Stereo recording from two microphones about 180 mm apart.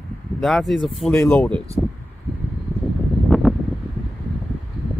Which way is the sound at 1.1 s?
10° left (ahead or behind).